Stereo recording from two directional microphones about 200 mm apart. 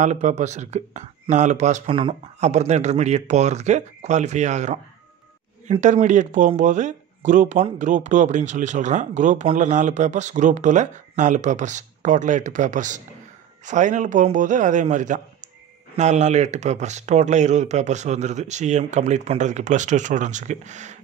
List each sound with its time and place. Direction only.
0.0 s speech: 35° right (ahead or behind)